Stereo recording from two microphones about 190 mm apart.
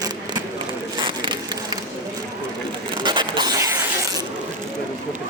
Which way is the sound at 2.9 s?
25° right (ahead or behind).